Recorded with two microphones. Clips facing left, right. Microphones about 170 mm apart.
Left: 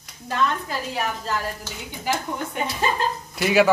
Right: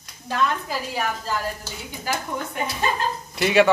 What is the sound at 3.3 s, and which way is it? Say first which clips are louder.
Speech: right 1 dB; centre (ahead or behind).